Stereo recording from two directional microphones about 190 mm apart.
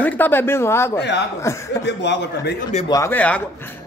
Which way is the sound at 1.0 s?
65° left (ahead or behind).